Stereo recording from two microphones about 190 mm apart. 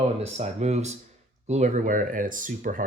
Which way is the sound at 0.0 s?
35° right (ahead or behind).